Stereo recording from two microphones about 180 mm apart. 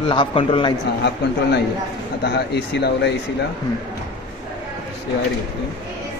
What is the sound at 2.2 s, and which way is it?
Speech, 65° left (ahead or behind).